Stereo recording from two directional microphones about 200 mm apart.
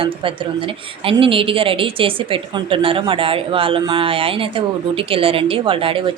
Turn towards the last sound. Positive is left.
turn(degrees=-25)  # may be behind; listen again after turning